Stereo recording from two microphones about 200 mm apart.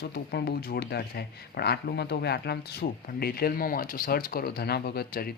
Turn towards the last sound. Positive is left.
turn(degrees=50)  # may be behind; listen again after turning